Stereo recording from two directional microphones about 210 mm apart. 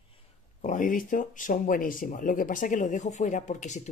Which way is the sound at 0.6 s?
40° left (ahead or behind).